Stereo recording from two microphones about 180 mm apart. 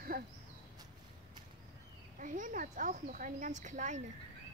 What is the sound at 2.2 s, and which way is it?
Speech, 45° right (ahead or behind).